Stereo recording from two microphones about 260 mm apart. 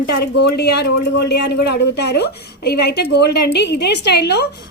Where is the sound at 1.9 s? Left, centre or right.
Left.